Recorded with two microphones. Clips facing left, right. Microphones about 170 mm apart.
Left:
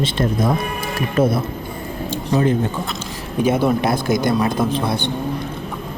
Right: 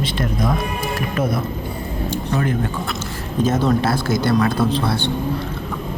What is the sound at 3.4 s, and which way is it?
A man's voice, 10° left (ahead or behind).